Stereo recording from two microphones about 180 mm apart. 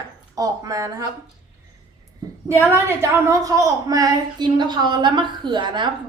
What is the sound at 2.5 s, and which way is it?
A woman's voice, 15° right (ahead or behind).